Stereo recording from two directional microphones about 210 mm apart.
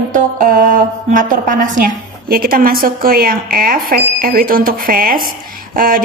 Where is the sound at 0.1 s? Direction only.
40° right (ahead or behind).